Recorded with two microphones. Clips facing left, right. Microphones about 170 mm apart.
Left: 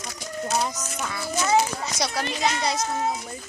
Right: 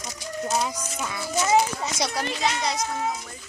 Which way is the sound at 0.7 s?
10° right (ahead or behind).